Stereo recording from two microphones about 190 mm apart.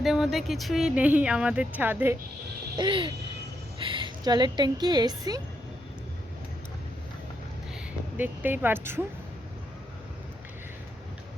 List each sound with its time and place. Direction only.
0.0 s speech: centre (ahead or behind)
2.7 s speech: 25° right (ahead or behind)
8.1 s speech: 10° right (ahead or behind)